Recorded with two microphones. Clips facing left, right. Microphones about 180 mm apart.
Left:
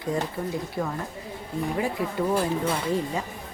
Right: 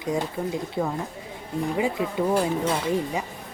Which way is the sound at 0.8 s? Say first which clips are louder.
Right 3 dB; 15° right (ahead or behind).